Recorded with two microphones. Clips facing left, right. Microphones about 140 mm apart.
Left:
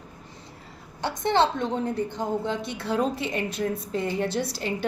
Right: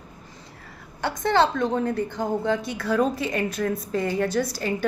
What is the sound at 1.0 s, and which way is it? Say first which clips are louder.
A woman's voice: right 2 dB; 25° left (ahead or behind).